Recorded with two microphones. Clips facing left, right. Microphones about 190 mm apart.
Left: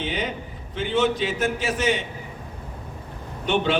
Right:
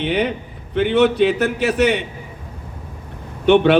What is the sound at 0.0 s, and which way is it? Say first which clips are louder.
A man's voice: right 8 dB; 65° right (ahead or behind).